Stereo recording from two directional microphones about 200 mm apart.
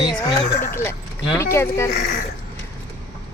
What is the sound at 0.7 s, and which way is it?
Speech, 10° left (ahead or behind).